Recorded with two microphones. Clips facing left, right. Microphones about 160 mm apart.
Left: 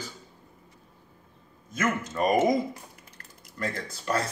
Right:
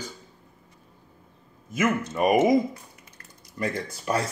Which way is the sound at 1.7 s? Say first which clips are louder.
Right 4 dB; 10° right (ahead or behind).